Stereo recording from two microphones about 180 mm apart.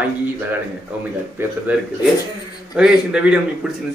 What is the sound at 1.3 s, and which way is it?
A man's voice, 10° right (ahead or behind).